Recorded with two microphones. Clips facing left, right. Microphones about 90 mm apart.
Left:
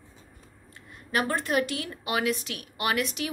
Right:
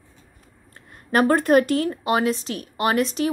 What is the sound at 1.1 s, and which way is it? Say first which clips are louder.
A woman's voice: right 10 dB; 45° right (ahead or behind).